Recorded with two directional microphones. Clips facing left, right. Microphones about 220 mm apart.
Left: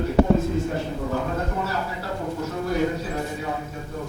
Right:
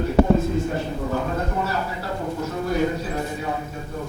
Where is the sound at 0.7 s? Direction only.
25° right (ahead or behind).